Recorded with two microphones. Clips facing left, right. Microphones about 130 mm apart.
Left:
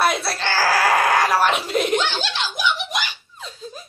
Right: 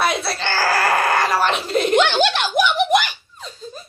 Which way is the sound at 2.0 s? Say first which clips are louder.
Right 7 dB; 65° right (ahead or behind).